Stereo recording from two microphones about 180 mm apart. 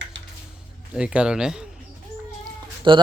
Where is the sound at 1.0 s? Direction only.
5° right (ahead or behind).